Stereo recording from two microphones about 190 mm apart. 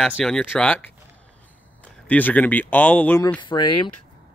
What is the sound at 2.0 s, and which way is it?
Speech, 10° left (ahead or behind).